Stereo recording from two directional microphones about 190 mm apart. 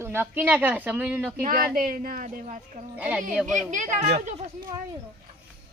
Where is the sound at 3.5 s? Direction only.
40° right (ahead or behind).